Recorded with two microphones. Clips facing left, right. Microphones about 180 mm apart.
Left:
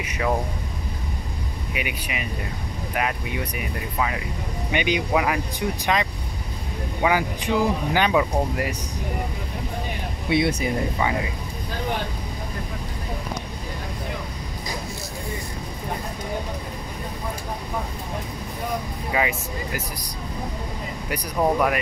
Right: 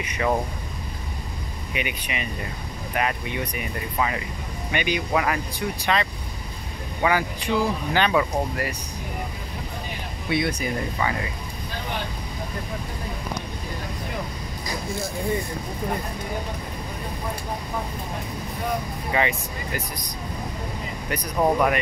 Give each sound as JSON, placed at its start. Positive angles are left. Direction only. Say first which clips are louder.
{"t": 0.0, "sound": "speech", "louder": "even", "side_deg": 5}
{"t": 1.7, "sound": "speech", "louder": "right 1 dB", "side_deg": 5}
{"t": 4.6, "sound": "speech", "louder": "left 2 dB", "side_deg": 15}
{"t": 7.0, "sound": "speech", "louder": "left 1 dB", "side_deg": 10}
{"t": 10.3, "sound": "speech", "louder": "left 3 dB", "side_deg": 20}
{"t": 19.1, "sound": "speech", "louder": "even", "side_deg": 5}
{"t": 21.1, "sound": "speech", "louder": "even", "side_deg": 0}